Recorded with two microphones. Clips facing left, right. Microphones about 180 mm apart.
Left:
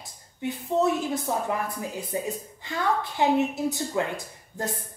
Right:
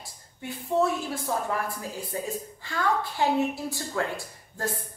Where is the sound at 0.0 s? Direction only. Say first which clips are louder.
Left 7 dB; 20° left (ahead or behind).